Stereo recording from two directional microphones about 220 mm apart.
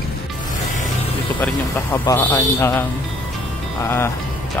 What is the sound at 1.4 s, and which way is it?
Speech, 10° left (ahead or behind).